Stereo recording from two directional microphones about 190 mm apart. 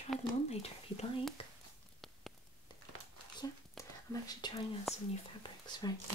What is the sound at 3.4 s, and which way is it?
Whispering, 20° left (ahead or behind).